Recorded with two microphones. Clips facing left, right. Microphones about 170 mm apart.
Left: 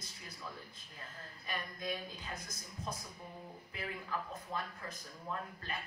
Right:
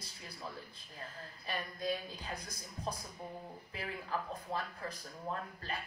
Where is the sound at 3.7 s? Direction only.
35° right (ahead or behind).